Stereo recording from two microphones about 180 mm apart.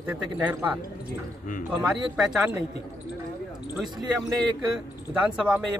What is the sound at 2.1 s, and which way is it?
Speech, 5° right (ahead or behind).